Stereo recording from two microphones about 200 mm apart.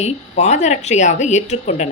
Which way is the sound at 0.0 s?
35° left (ahead or behind).